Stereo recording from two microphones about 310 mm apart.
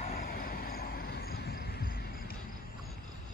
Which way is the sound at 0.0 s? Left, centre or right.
Left.